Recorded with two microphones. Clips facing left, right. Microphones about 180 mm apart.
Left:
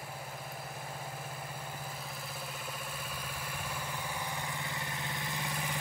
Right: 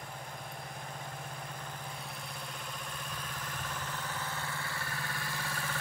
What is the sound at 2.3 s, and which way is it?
Vehicle, 5° left (ahead or behind).